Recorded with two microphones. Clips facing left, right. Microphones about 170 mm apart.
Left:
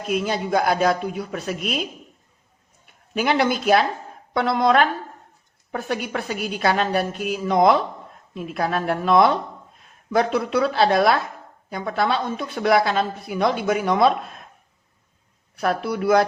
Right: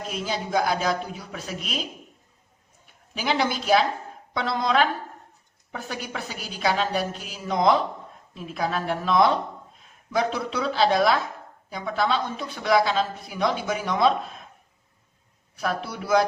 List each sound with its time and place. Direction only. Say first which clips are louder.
0.1 s speech: left 6 dB; 60° left (ahead or behind)
3.2 s speech: left 5 dB; 60° left (ahead or behind)
15.5 s speech: left 6 dB; 60° left (ahead or behind)